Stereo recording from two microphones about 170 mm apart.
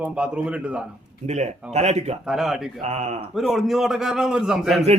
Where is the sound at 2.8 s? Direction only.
40° right (ahead or behind).